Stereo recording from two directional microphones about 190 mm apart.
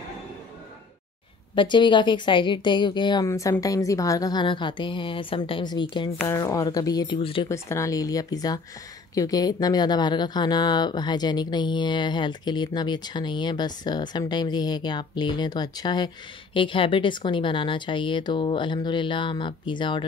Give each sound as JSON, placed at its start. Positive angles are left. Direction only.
{"t": 1.5, "sound": "speech", "side_deg": 25}
{"t": 7.4, "sound": "speech", "side_deg": 15}